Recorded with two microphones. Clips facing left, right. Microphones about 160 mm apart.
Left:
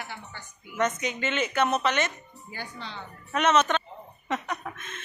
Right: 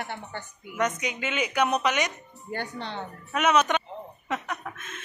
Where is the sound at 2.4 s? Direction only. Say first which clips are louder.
Right 6 dB; 60° right (ahead or behind).